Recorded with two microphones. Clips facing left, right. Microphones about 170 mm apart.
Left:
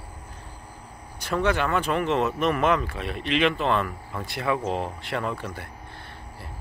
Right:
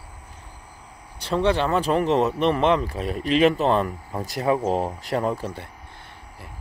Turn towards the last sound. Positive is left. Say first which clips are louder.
# right 5 dB
turn(degrees=-40)  # may be behind; listen again after turning